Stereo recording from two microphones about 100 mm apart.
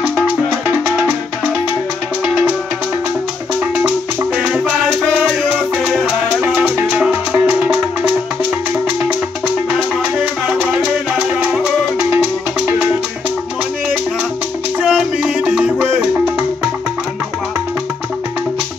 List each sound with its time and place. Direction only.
0.7 s music: 10° right (ahead or behind)
6.4 s music: 10° right (ahead or behind)
14.8 s music: 5° right (ahead or behind)